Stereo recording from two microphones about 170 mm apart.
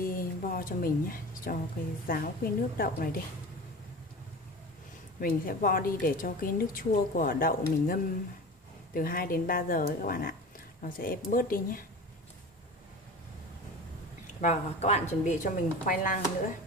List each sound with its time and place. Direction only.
0.0 s a sound: 55° left (ahead or behind)
2.0 s a woman's voice: 55° left (ahead or behind)
5.2 s a woman's voice: 55° left (ahead or behind)
14.4 s a woman's voice: 40° left (ahead or behind)